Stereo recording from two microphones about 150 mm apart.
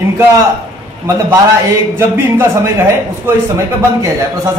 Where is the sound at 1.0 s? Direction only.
20° right (ahead or behind).